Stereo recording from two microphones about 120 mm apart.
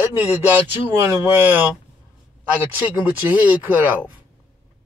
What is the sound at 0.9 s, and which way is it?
Speech, 20° right (ahead or behind).